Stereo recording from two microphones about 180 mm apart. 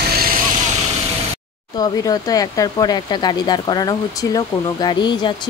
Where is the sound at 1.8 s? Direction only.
20° left (ahead or behind).